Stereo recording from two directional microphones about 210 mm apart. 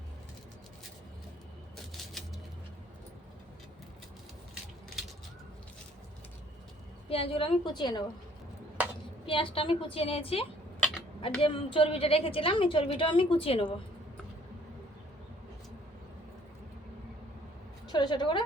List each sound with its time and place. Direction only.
1.7 s typewriter: centre (ahead or behind)
7.1 s a woman's voice: 25° left (ahead or behind)
9.2 s a woman's voice: 25° left (ahead or behind)
17.8 s a woman's voice: 20° left (ahead or behind)